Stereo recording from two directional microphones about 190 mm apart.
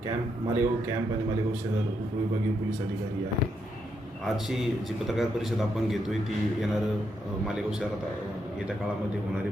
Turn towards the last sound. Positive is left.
turn(degrees=-5)  # may be behind; listen again after turning